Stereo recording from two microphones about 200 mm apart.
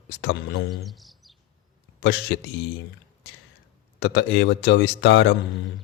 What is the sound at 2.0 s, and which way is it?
Speech, 60° left (ahead or behind).